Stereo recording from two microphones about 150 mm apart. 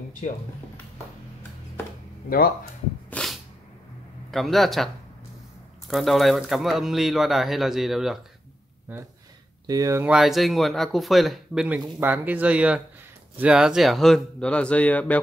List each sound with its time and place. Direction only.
2.2 s speech: 80° left
3.1 s a sound: 5° left (ahead or behind)
4.3 s speech: centre (ahead or behind)
9.7 s speech: 25° right (ahead or behind)
10.0 s speech: centre (ahead or behind)